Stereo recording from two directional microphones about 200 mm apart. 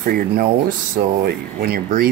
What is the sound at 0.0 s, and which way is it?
Speech, 50° right (ahead or behind).